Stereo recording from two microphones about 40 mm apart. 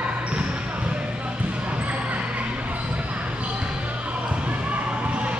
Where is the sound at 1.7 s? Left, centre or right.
Right.